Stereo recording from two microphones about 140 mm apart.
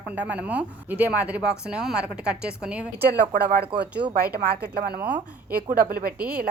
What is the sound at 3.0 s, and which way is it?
A woman's voice, 90° right.